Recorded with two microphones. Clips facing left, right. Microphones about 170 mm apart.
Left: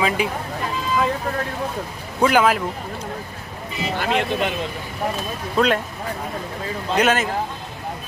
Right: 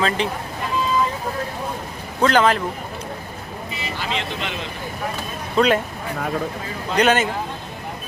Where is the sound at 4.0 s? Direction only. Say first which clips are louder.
Left 7 dB; 55° left (ahead or behind).